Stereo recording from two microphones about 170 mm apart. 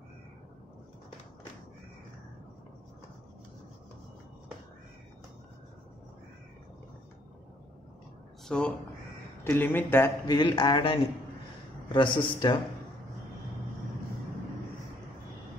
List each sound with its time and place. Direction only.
8.5 s speech: 5° left (ahead or behind)
10.3 s speech: 25° left (ahead or behind)